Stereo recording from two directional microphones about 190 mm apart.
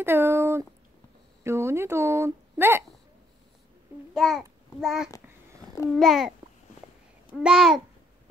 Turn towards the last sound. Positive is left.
turn(degrees=-5)  # may be behind; listen again after turning